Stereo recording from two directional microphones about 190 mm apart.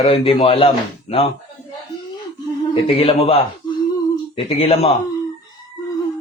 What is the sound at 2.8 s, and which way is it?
Speech, 35° left (ahead or behind).